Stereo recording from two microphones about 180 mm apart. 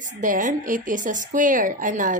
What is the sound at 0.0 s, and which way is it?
A woman's voice, 45° right (ahead or behind).